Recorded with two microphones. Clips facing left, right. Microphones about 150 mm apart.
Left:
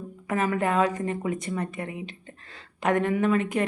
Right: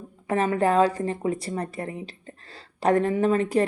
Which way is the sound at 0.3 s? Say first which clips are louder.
Right 3 dB; 30° right (ahead or behind).